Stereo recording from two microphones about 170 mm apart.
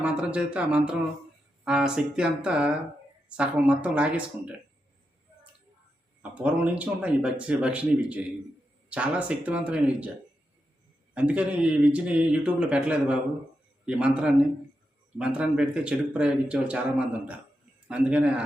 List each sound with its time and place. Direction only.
0.0 s speech: 5° right (ahead or behind)
6.3 s speech: 5° right (ahead or behind)
11.1 s speech: 5° right (ahead or behind)